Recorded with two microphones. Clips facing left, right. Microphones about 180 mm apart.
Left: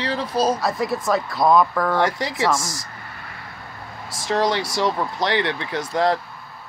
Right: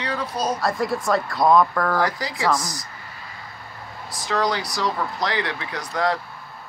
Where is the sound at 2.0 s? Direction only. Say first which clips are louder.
Left 3 dB; 25° left (ahead or behind).